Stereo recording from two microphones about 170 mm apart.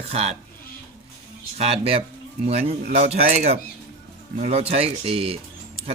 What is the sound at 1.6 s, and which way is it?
Speech, 35° right (ahead or behind).